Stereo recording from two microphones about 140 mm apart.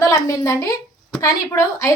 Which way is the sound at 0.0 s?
25° left (ahead or behind).